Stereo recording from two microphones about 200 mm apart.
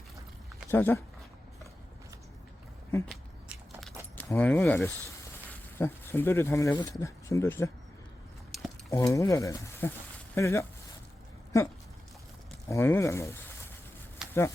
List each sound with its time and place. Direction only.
0.7 s speech: 10° left (ahead or behind)
3.5 s biting: centre (ahead or behind)
4.2 s speech: 10° left (ahead or behind)
8.5 s cutlery: centre (ahead or behind)
8.9 s speech: 15° left (ahead or behind)
14.2 s a sound: 5° right (ahead or behind)